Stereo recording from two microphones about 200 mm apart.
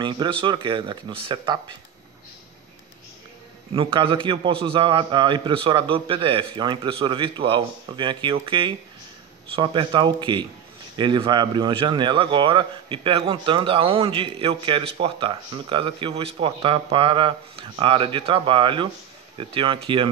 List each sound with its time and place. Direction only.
0.0 s a man's voice: 25° right (ahead or behind)
3.7 s a man's voice: 25° right (ahead or behind)